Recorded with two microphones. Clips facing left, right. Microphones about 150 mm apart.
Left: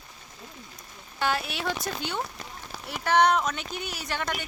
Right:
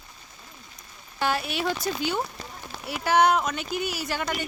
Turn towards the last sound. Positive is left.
turn(degrees=-5)  # may be behind; listen again after turning